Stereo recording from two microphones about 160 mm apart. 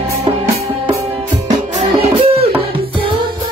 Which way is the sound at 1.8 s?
40° right (ahead or behind).